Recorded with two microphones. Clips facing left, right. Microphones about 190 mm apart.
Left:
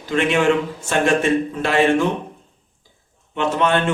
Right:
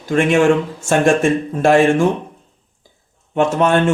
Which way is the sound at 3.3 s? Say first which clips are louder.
Right 4 dB; 45° right (ahead or behind).